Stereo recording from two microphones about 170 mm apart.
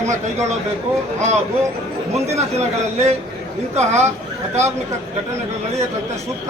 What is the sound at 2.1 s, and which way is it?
A man's voice, 40° right (ahead or behind).